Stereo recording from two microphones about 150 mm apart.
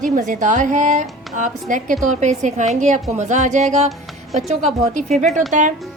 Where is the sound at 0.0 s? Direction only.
60° right (ahead or behind).